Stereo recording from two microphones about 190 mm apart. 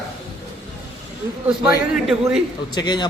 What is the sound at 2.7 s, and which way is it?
Speech, 25° left (ahead or behind).